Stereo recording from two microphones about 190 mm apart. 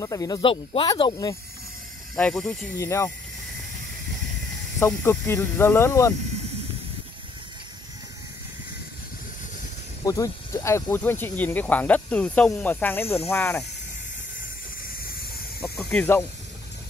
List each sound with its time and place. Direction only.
0.0 s speech: 20° left (ahead or behind)
2.1 s speech: 5° left (ahead or behind)
2.8 s speech: 15° left (ahead or behind)
4.7 s speech: 10° left (ahead or behind)
10.0 s speech: 15° left (ahead or behind)
15.6 s snake: 5° left (ahead or behind)